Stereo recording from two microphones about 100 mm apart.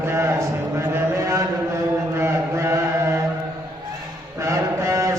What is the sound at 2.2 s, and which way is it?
Chant, 30° right (ahead or behind).